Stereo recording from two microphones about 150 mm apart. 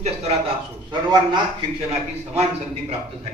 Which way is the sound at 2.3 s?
45° right (ahead or behind).